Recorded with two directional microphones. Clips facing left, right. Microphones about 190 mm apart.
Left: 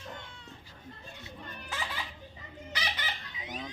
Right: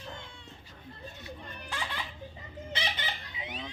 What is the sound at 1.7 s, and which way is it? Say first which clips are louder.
Baby laughter: even; centre (ahead or behind).